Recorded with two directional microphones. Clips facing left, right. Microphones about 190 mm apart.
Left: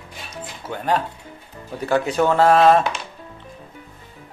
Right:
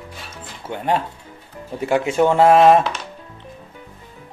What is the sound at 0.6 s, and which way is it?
Speech, 20° right (ahead or behind).